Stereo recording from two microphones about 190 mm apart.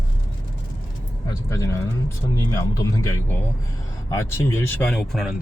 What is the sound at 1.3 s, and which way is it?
Speech, 15° left (ahead or behind).